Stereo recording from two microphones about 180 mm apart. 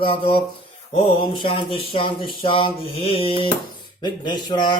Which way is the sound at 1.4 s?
30° left (ahead or behind).